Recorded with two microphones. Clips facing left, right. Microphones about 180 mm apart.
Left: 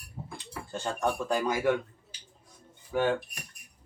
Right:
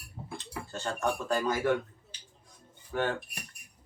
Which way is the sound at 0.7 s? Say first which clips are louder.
Left 2 dB; 15° left (ahead or behind).